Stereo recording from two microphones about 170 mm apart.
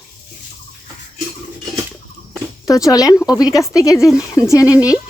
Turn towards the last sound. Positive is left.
turn(degrees=20)  # may be behind; listen again after turning